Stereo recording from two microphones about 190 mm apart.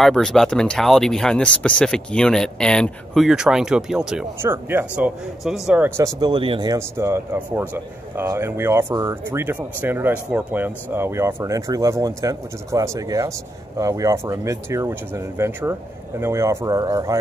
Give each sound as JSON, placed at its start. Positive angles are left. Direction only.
{"t": 0.0, "sound": "speech", "side_deg": 0}